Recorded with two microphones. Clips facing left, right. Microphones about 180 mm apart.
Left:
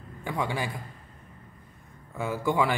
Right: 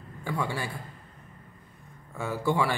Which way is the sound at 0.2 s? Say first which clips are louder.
Left 1 dB; 15° left (ahead or behind).